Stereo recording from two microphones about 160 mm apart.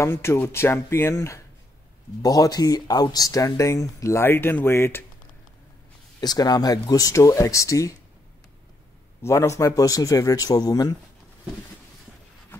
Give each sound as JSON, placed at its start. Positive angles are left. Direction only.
{"t": 0.0, "sound": "speech", "side_deg": 15}
{"t": 6.2, "sound": "speech", "side_deg": 25}
{"t": 9.2, "sound": "speech", "side_deg": 20}